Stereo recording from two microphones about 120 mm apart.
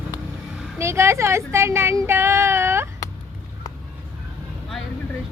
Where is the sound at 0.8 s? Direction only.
25° right (ahead or behind).